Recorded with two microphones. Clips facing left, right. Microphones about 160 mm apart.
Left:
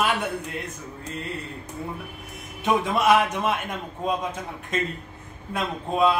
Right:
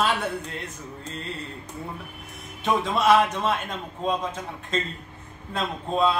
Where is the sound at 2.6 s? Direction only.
15° left (ahead or behind).